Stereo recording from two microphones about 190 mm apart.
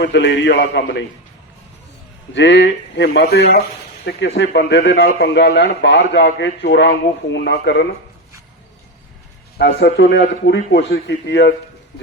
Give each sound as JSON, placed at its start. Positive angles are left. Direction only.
{"t": 0.0, "sound": "a man's voice", "side_deg": 65}
{"t": 2.3, "sound": "a man's voice", "side_deg": 70}
{"t": 7.4, "sound": "a man's voice", "side_deg": 60}
{"t": 9.6, "sound": "a man's voice", "side_deg": 65}